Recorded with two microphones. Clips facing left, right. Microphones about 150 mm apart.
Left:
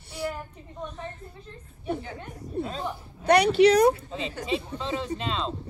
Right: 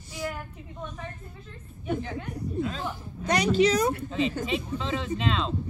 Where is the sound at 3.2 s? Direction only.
60° left (ahead or behind).